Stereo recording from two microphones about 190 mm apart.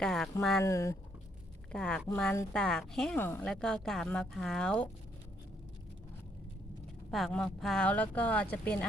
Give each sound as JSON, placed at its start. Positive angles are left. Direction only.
{"t": 0.0, "sound": "a sound", "side_deg": 0}
{"t": 0.6, "sound": "a woman's voice", "side_deg": 15}
{"t": 7.1, "sound": "a woman's voice", "side_deg": 0}